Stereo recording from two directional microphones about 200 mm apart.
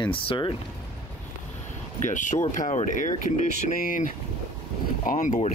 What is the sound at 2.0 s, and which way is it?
Speech, 40° left (ahead or behind).